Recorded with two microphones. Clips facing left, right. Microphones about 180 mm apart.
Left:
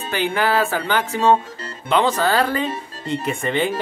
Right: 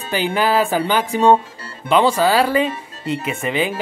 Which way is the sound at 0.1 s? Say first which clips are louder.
Right 2 dB; 15° right (ahead or behind).